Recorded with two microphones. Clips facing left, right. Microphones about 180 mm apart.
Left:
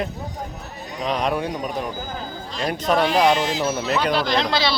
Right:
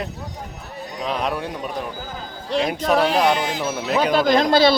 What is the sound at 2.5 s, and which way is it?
Speech, 65° right (ahead or behind).